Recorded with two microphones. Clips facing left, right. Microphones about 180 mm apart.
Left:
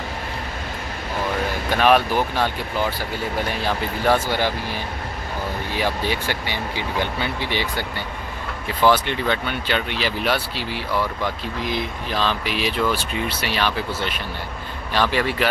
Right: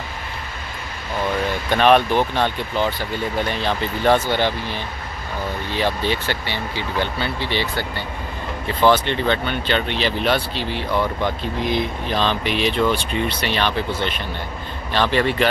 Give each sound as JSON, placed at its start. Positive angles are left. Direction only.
{"t": 1.7, "sound": "speech", "side_deg": 5}
{"t": 8.9, "sound": "speech", "side_deg": 10}